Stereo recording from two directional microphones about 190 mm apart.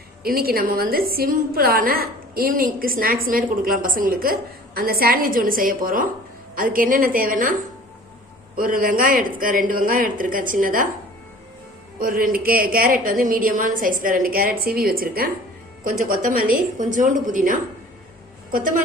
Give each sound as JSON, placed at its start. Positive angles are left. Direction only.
{"t": 0.2, "sound": "a woman's voice", "side_deg": -50}
{"t": 8.5, "sound": "a woman's voice", "side_deg": -50}
{"t": 11.9, "sound": "a woman's voice", "side_deg": -50}